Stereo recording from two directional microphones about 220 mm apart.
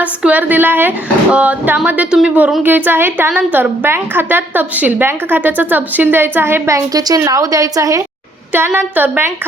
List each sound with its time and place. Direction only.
0.0 s speech: 5° right (ahead or behind)